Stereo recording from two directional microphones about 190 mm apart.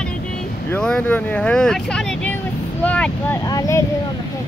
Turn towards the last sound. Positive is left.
turn(degrees=15)  # may be behind; listen again after turning